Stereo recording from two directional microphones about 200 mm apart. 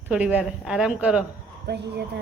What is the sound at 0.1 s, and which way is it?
A woman's voice, 5° right (ahead or behind).